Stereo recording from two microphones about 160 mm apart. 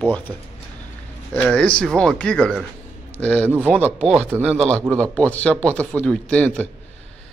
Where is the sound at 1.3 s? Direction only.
5° left (ahead or behind).